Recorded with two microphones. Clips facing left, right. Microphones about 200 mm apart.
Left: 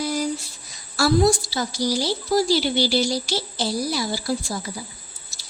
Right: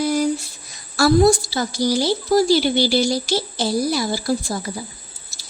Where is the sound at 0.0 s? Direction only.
55° right (ahead or behind).